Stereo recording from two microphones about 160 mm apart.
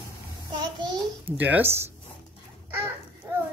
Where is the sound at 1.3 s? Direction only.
10° right (ahead or behind).